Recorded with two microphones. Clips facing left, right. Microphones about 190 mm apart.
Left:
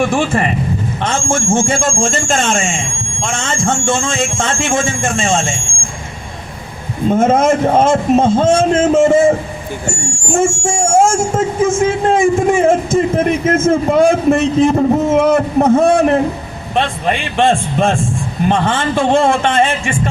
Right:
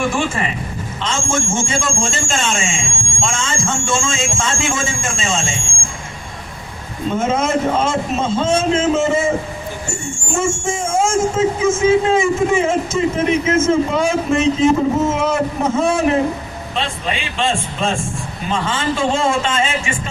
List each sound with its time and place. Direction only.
0.0 s a man's voice: 55° left (ahead or behind)
7.1 s speech: 50° left (ahead or behind)
10.3 s a man's voice: 50° left (ahead or behind)